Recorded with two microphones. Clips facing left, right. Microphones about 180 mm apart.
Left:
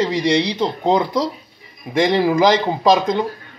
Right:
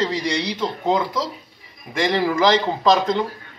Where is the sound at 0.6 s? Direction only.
40° left (ahead or behind).